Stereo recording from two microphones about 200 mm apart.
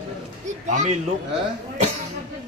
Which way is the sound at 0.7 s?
40° right (ahead or behind).